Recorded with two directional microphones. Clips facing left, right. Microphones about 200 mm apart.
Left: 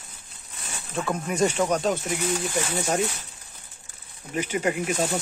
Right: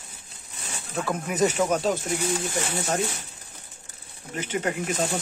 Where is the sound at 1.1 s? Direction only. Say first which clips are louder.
Even; 5° right (ahead or behind).